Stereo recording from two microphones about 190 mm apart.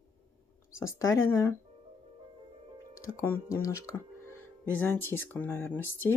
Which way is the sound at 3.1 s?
15° left (ahead or behind).